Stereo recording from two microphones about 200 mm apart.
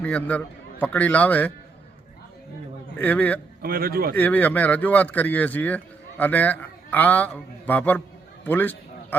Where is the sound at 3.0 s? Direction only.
10° left (ahead or behind).